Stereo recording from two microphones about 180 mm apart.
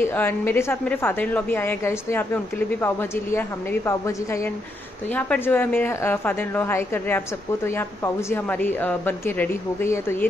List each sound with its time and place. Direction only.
0.0 s a woman's voice: 10° left (ahead or behind)